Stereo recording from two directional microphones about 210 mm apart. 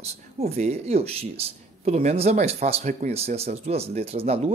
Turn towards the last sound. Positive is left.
turn(degrees=-30)  # may be behind; listen again after turning